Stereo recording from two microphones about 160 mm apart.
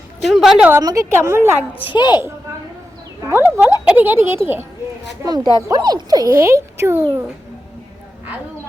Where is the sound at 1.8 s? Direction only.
30° left (ahead or behind).